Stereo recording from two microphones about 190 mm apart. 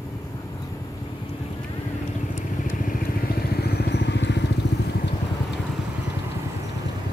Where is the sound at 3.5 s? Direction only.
60° left (ahead or behind).